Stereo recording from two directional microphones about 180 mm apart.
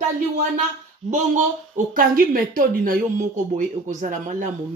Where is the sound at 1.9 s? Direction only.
50° right (ahead or behind).